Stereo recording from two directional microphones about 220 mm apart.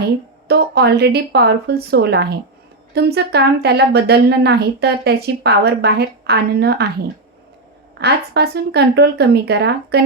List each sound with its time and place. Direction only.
0.0 s a woman's voice: 45° right (ahead or behind)
7.9 s a woman's voice: 50° right (ahead or behind)